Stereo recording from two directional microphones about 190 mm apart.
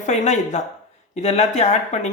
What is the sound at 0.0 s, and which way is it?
Speech, 35° left (ahead or behind).